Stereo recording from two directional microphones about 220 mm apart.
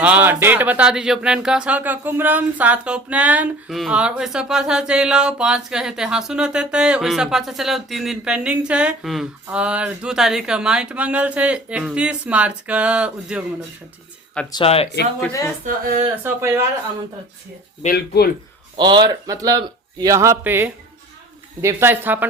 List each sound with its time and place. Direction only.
0.0 s speech: 5° right (ahead or behind)
14.5 s speech: 25° left (ahead or behind)
15.2 s speech: 10° left (ahead or behind)
16.2 s a man's voice: 10° right (ahead or behind)
17.8 s speech: 45° left (ahead or behind)
18.8 s a man's voice: 20° right (ahead or behind)